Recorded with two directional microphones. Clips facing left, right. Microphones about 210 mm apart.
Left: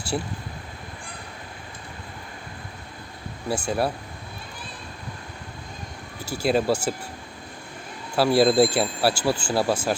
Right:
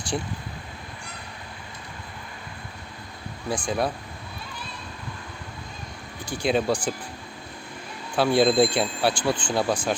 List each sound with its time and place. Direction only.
3.5 s speech: 5° left (ahead or behind)
6.2 s speech: 5° left (ahead or behind)
8.1 s speech: 5° left (ahead or behind)